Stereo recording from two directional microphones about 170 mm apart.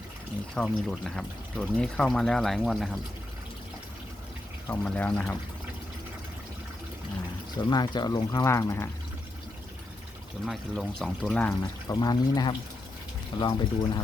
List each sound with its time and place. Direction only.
0.5 s speech: 5° left (ahead or behind)
4.7 s speech: 5° left (ahead or behind)
7.6 s speech: 25° left (ahead or behind)
10.4 s speech: centre (ahead or behind)
11.6 s speech: 25° left (ahead or behind)